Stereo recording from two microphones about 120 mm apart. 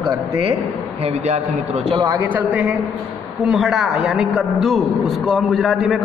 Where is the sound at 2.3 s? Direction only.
10° right (ahead or behind); by 5.8 s 5° left (ahead or behind).